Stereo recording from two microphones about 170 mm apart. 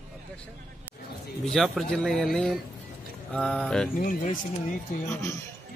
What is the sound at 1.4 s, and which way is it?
A man's voice, centre (ahead or behind).